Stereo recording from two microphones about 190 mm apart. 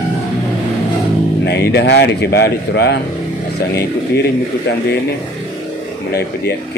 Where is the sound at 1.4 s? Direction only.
60° left (ahead or behind).